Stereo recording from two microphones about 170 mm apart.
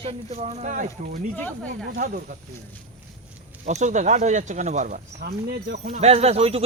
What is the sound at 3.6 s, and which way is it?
Speech, 45° right (ahead or behind).